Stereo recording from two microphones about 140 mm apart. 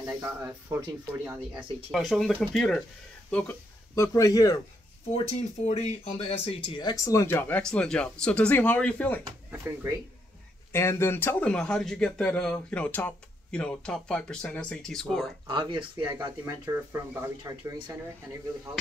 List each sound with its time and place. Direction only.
0.2 s speech: 20° right (ahead or behind)
1.9 s speech: centre (ahead or behind)
3.9 s a man's voice: 25° left (ahead or behind)
5.1 s speech: 50° left (ahead or behind); by 9.2 s 10° left (ahead or behind)
10.7 s speech: 20° left (ahead or behind); by 15.3 s 5° left (ahead or behind)
15.4 s speech: 35° right (ahead or behind)
16.4 s speech: 20° right (ahead or behind)